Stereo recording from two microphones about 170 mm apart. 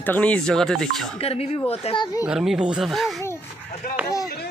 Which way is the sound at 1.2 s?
35° left (ahead or behind).